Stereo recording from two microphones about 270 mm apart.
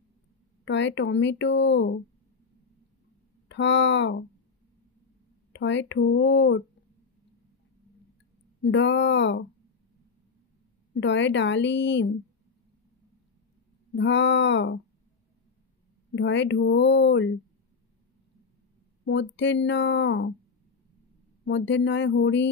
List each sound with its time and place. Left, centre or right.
0.7 s speech: left
3.4 s speech: left
5.5 s speech: left
8.6 s speech: left
11.0 s speech: left
13.9 s speech: left
16.2 s speech: left
19.0 s speech: left
21.5 s speech: left